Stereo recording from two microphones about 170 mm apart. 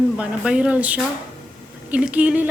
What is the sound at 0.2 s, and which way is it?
A woman's voice, 5° right (ahead or behind).